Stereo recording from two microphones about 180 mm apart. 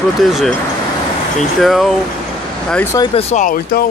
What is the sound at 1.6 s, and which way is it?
Speech, centre (ahead or behind).